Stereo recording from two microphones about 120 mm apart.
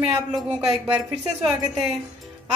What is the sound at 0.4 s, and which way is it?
A woman's voice, 5° right (ahead or behind).